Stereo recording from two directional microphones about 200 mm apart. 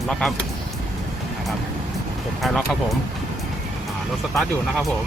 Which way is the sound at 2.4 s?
Centre (ahead or behind).